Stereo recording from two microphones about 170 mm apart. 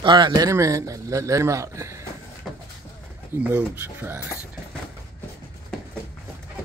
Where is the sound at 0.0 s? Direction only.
25° right (ahead or behind).